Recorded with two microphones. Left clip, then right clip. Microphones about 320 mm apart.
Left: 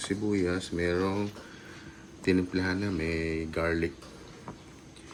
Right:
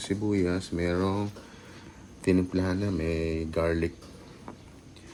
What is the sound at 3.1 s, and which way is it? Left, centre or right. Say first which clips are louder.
Speech: right 2 dB; right.